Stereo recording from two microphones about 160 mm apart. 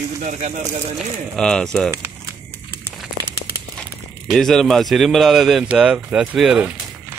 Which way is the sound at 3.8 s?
Centre (ahead or behind).